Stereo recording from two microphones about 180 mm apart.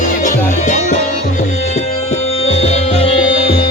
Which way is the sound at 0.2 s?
45° left (ahead or behind).